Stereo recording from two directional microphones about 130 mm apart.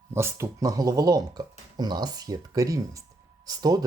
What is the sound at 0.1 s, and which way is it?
Speech, 20° right (ahead or behind).